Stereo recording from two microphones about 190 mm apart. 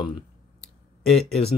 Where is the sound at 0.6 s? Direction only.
Centre (ahead or behind).